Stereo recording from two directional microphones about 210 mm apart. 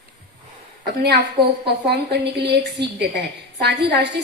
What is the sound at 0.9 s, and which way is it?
A woman's voice, 55° right (ahead or behind).